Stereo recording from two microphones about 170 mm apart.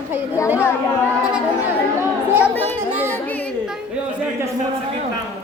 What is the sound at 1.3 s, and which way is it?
Speech, 10° right (ahead or behind).